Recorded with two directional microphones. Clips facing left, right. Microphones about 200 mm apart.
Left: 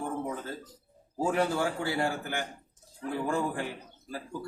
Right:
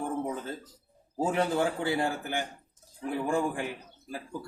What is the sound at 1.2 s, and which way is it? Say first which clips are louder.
A man's voice: right 1 dB; 20° right (ahead or behind).